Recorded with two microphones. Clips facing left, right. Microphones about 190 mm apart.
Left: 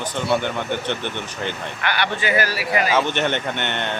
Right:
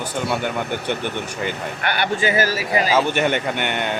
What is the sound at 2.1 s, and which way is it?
Speech, 45° right (ahead or behind).